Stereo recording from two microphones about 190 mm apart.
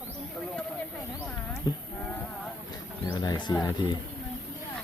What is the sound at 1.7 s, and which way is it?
Speech, 20° left (ahead or behind).